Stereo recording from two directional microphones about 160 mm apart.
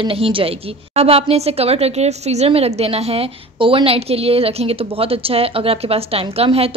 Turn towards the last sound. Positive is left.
turn(degrees=-40)  # may be behind; listen again after turning